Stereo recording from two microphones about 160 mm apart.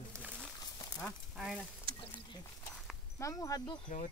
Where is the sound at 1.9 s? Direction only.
70° right (ahead or behind).